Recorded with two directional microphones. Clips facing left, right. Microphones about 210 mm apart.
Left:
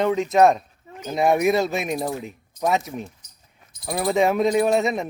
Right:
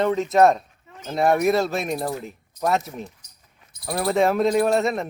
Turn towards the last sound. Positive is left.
turn(degrees=0)  # may be behind; listen again after turning